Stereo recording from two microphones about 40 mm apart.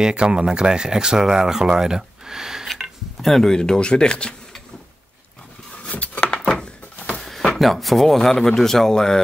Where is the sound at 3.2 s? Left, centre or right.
Centre.